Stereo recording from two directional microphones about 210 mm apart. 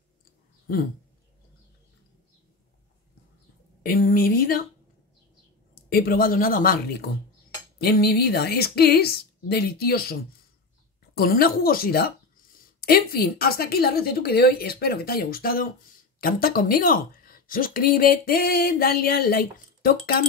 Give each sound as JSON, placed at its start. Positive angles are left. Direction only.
{"t": 0.7, "sound": "speech", "side_deg": 45}
{"t": 3.8, "sound": "speech", "side_deg": 40}
{"t": 5.9, "sound": "speech", "side_deg": 45}
{"t": 11.1, "sound": "speech", "side_deg": 45}